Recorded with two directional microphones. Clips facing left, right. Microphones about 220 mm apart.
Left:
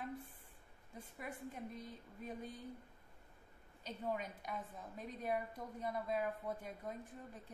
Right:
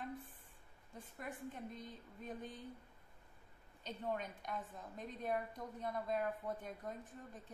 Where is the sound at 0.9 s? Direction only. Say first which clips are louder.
Even; 10° left (ahead or behind).